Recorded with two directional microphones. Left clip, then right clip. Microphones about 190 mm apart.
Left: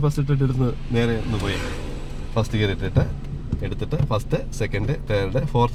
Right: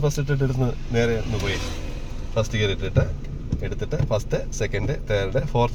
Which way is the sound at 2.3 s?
25° left (ahead or behind).